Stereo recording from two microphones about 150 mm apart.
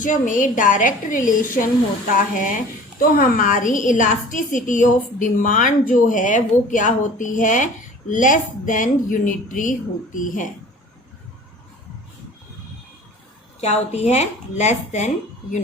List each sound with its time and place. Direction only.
0.0 s speech: 60° left (ahead or behind)
13.6 s speech: 45° left (ahead or behind)